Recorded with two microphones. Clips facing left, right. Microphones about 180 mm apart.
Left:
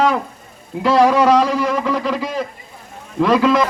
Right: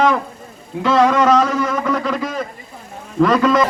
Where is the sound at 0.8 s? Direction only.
35° left (ahead or behind).